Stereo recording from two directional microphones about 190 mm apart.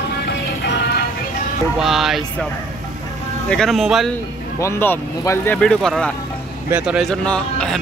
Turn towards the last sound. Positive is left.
turn(degrees=5)  # may be behind; listen again after turning